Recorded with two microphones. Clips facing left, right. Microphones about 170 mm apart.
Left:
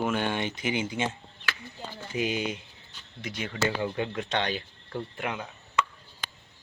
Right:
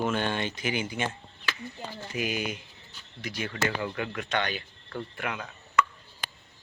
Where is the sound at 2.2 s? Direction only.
25° left (ahead or behind).